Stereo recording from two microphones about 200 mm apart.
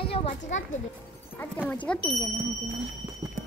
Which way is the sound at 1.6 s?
5° left (ahead or behind).